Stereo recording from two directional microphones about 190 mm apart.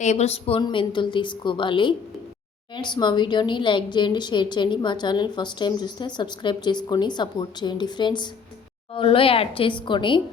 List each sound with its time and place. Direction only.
0.0 s a woman's voice: 35° left (ahead or behind)